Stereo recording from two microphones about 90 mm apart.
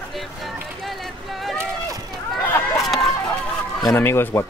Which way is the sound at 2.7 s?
Centre (ahead or behind).